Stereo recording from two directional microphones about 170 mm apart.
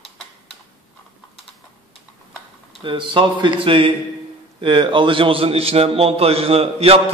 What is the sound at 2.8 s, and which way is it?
A man's voice, 30° right (ahead or behind).